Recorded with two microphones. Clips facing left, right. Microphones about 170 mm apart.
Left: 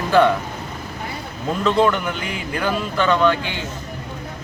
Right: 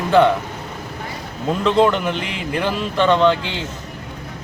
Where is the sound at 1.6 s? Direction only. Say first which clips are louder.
Right 2 dB; 20° right (ahead or behind).